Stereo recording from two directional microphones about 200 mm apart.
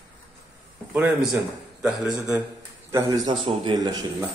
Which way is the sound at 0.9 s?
5° right (ahead or behind).